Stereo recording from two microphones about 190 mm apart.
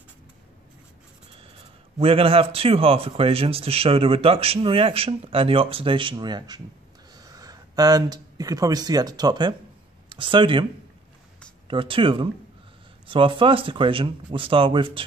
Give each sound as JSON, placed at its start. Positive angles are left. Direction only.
{"t": 2.0, "sound": "speech", "side_deg": -30}